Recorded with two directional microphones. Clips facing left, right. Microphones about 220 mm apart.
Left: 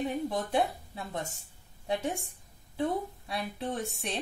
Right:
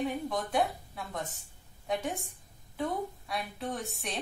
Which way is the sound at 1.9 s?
25° left (ahead or behind).